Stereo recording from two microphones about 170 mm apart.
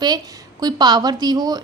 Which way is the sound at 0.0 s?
25° right (ahead or behind).